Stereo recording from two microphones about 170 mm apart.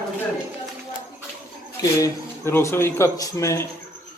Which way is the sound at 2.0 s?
15° left (ahead or behind).